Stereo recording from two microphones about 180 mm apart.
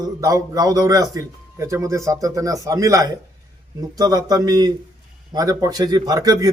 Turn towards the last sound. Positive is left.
turn(degrees=-20)  # may be behind; listen again after turning